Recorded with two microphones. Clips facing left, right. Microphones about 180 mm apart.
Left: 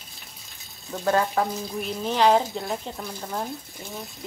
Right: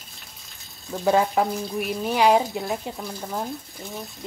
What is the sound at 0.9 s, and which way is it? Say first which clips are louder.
Speech: right 3 dB; 15° right (ahead or behind).